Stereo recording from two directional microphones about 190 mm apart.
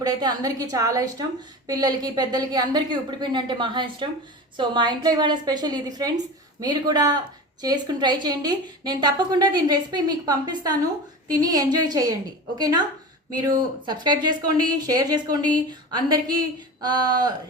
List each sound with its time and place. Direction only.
0.0 s a woman's voice: 20° right (ahead or behind)
13.8 s a woman's voice: 20° right (ahead or behind)